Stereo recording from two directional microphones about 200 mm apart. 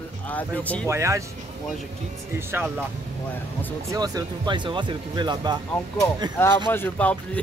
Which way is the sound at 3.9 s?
20° right (ahead or behind).